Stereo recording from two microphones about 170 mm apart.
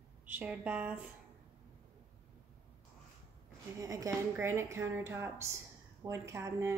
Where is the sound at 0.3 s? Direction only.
10° right (ahead or behind).